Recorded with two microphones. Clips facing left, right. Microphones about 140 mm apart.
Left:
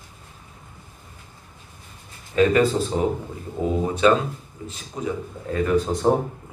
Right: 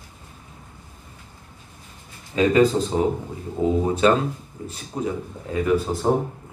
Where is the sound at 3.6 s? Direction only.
30° right (ahead or behind).